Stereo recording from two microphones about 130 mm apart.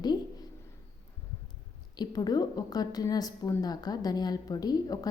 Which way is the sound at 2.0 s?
30° left (ahead or behind).